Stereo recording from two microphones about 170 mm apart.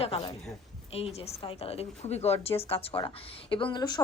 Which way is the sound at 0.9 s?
35° left (ahead or behind).